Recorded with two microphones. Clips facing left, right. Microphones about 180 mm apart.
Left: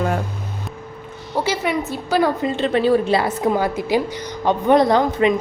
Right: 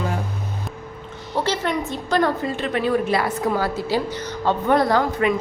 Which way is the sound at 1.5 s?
10° left (ahead or behind).